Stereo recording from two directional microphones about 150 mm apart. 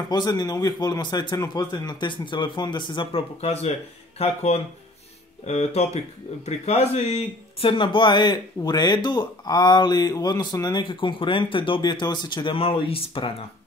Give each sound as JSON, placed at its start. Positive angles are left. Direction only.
{"t": 0.1, "sound": "a man's voice", "side_deg": 30}
{"t": 7.6, "sound": "speech", "side_deg": 35}